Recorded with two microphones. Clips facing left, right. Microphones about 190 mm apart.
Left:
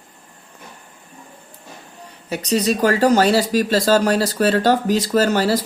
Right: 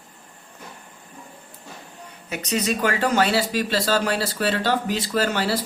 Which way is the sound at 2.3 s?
35° left (ahead or behind).